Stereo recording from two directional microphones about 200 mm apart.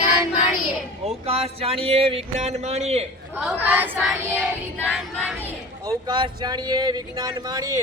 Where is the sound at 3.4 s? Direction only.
5° right (ahead or behind).